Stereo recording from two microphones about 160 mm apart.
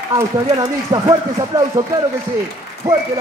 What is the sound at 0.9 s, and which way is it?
Speech, 25° right (ahead or behind).